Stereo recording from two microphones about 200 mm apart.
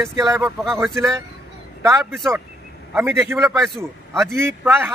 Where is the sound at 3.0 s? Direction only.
10° right (ahead or behind).